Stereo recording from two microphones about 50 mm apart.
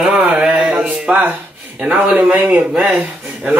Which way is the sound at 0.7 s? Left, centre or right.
Right.